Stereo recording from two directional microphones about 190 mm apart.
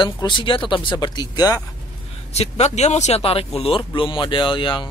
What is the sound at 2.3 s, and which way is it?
Speech, 35° left (ahead or behind).